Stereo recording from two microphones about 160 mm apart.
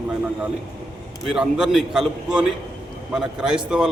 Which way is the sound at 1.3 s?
5° right (ahead or behind).